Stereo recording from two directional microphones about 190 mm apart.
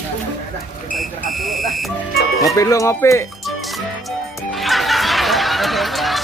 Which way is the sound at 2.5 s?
15° left (ahead or behind).